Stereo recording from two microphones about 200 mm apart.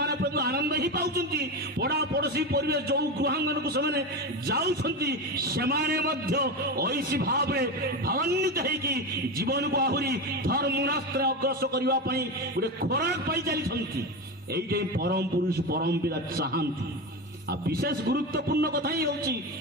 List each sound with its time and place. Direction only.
0.0 s a man's voice: 50° right (ahead or behind)